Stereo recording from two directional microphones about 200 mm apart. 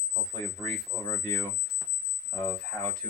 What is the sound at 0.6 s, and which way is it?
Speech, 15° left (ahead or behind).